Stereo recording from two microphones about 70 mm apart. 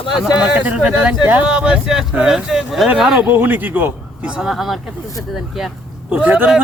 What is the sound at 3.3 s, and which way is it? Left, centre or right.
Speech, right.